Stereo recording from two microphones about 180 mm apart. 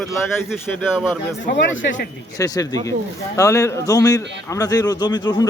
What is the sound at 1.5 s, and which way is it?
Speech, 90° left.